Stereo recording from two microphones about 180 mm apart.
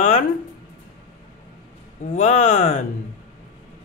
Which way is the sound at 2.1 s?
40° left (ahead or behind).